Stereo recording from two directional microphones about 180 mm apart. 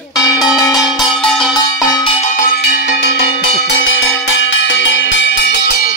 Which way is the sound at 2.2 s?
55° left (ahead or behind).